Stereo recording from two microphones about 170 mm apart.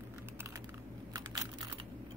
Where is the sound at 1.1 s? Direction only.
25° right (ahead or behind).